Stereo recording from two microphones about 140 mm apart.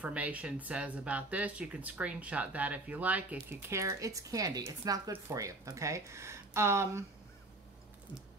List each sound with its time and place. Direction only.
0.0 s speech: 10° right (ahead or behind)